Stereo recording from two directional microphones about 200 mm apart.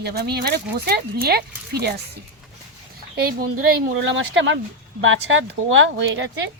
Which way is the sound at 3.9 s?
70° right (ahead or behind).